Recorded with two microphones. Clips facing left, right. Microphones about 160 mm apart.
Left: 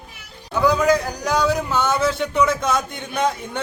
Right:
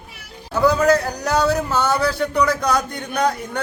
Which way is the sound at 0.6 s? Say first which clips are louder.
Right 2 dB; 15° left (ahead or behind).